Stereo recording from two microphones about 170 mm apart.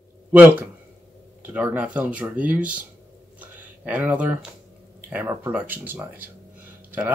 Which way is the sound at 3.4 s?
10° right (ahead or behind).